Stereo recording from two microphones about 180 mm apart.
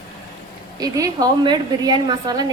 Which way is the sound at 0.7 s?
20° right (ahead or behind).